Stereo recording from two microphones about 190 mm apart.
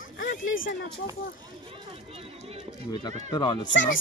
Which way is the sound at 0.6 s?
50° left (ahead or behind).